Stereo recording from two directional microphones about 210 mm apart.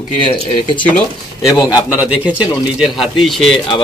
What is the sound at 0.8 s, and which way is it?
Speech, 5° left (ahead or behind).